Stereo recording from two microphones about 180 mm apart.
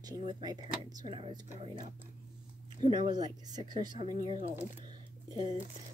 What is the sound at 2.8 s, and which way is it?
Speech, 25° right (ahead or behind).